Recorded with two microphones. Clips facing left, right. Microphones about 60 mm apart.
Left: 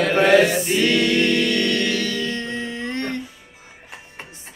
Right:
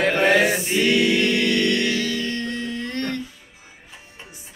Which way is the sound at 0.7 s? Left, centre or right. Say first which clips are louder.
Even; centre.